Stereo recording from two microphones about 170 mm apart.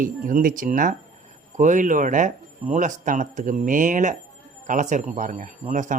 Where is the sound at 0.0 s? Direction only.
55° right (ahead or behind).